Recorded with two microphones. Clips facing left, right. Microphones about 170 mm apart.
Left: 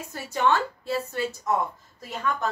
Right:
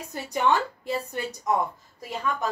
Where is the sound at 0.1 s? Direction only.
15° right (ahead or behind).